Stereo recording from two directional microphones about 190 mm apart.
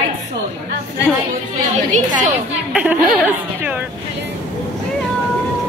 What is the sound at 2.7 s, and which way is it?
A woman's voice, 5° right (ahead or behind).